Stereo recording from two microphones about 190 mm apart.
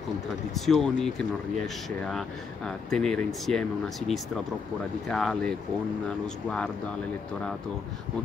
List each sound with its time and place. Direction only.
0.6 s speech: centre (ahead or behind)
3.5 s speech: 40° right (ahead or behind)
5.0 s speech: centre (ahead or behind)